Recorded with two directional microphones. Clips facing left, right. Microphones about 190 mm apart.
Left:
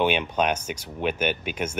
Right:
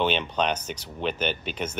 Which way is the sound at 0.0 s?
10° left (ahead or behind).